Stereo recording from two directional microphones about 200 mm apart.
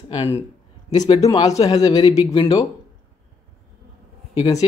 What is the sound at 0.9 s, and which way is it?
A man's voice, 20° left (ahead or behind).